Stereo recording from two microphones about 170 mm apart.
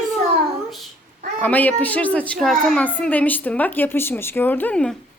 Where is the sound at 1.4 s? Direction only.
10° left (ahead or behind).